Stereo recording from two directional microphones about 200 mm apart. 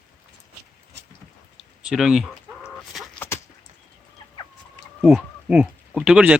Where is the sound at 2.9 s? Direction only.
Centre (ahead or behind).